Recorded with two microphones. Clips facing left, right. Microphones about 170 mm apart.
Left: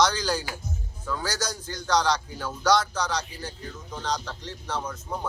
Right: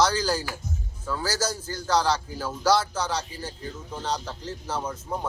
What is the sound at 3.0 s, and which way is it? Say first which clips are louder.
Speech: right 1 dB; 30° right (ahead or behind).